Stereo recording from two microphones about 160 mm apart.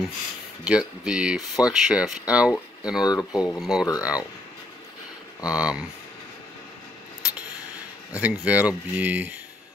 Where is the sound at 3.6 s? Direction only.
Centre (ahead or behind).